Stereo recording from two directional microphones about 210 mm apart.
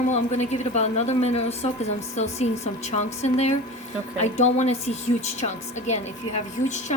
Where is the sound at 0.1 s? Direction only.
35° left (ahead or behind).